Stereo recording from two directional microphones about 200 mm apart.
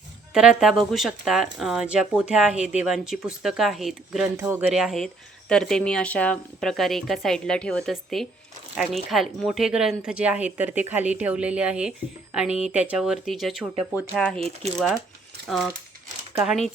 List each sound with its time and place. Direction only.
0.3 s speech: 5° right (ahead or behind)
4.4 s speech: 10° right (ahead or behind)
14.3 s speech: 30° right (ahead or behind)
15.4 s speech: centre (ahead or behind)